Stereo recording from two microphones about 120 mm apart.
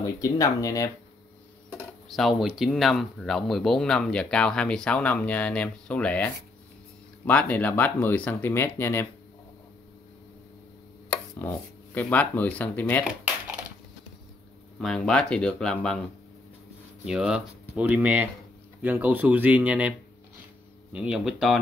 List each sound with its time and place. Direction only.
0.0 s speech: 30° left (ahead or behind)
2.0 s speech: centre (ahead or behind); by 9.0 s 20° left (ahead or behind)
11.3 s speech: 15° left (ahead or behind)
14.8 s speech: 5° left (ahead or behind)
17.0 s speech: 5° right (ahead or behind)
20.9 s speech: 10° right (ahead or behind)